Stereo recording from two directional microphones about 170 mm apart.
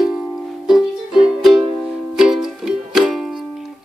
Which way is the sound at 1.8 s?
5° right (ahead or behind).